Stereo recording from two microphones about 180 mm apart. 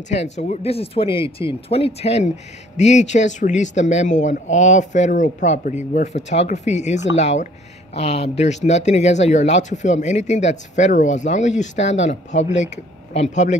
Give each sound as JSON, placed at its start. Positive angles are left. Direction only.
{"t": 0.1, "sound": "speech", "side_deg": 40}